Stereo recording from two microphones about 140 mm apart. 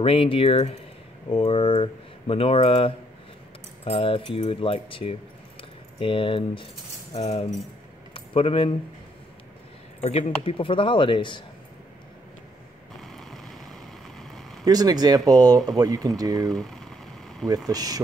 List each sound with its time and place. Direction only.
0.0 s speech: 40° left (ahead or behind)
8.1 s keys jangling: 40° left (ahead or behind)
10.0 s speech: 45° left (ahead or behind)
13.0 s vehicle: centre (ahead or behind)
14.6 s speech: 25° right (ahead or behind)
16.4 s a sound: centre (ahead or behind)
17.6 s speech: 25° right (ahead or behind)